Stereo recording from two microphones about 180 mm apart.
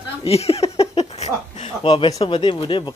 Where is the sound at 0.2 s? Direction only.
35° left (ahead or behind).